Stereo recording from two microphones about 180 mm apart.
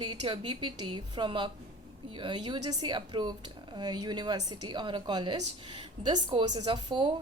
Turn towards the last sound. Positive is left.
turn(degrees=-25)  # may be behind; listen again after turning